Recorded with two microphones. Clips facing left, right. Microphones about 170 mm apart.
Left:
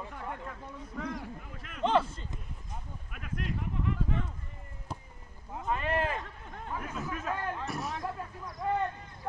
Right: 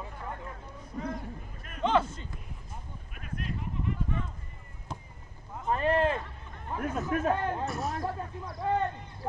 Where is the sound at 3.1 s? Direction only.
75° left (ahead or behind).